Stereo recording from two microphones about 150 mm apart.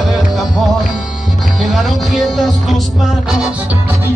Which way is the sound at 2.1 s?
Centre (ahead or behind).